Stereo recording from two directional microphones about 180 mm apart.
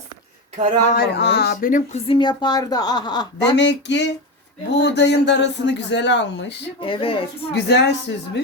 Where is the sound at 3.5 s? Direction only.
75° left (ahead or behind).